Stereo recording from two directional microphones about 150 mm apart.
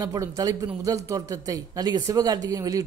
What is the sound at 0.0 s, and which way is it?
A man's voice, 25° right (ahead or behind).